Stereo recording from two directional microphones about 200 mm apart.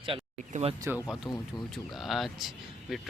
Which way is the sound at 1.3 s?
20° left (ahead or behind).